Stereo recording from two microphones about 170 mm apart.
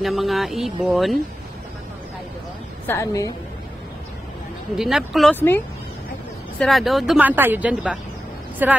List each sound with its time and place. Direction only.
0.0 s speech: centre (ahead or behind)
2.9 s a woman's voice: 20° left (ahead or behind)
4.7 s speech: centre (ahead or behind)
5.3 s a woman's voice: 10° left (ahead or behind)
6.6 s speech: centre (ahead or behind)